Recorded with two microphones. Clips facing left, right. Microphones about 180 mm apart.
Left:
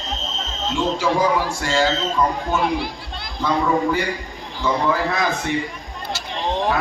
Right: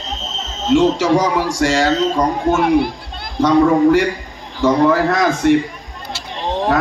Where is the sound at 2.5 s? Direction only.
55° right (ahead or behind).